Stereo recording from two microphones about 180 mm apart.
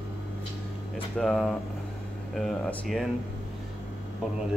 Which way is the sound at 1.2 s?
Centre (ahead or behind).